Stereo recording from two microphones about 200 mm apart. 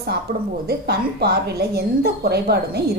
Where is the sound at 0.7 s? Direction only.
55° right (ahead or behind).